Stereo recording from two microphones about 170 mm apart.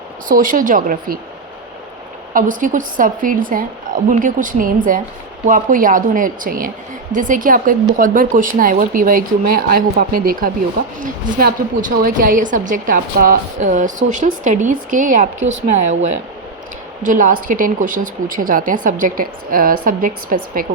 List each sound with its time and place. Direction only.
0.3 s a woman's voice: 50° right (ahead or behind)
2.3 s a woman's voice: 50° right (ahead or behind)